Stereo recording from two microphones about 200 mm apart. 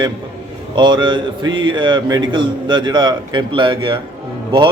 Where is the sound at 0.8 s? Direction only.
25° right (ahead or behind).